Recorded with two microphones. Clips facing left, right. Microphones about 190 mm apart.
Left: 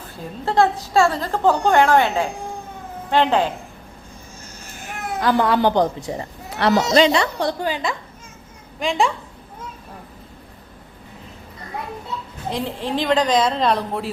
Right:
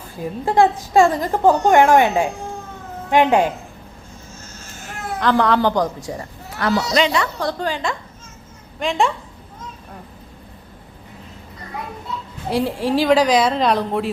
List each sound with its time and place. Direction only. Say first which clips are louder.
0.4 s a woman's voice: right 2 dB; 15° right (ahead or behind)
5.2 s a woman's voice: right 1 dB; 10° left (ahead or behind)
5.5 s a woman's voice: left 1 dB; 25° left (ahead or behind)
7.6 s a woman's voice: even; 5° left (ahead or behind)
12.5 s speech: right 5 dB; 10° right (ahead or behind)